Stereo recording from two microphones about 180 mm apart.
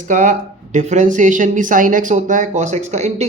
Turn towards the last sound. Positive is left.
turn(degrees=-40)  # may be behind; listen again after turning